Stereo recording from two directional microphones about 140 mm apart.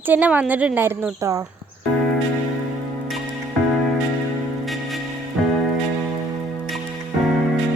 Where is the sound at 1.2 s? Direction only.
25° right (ahead or behind).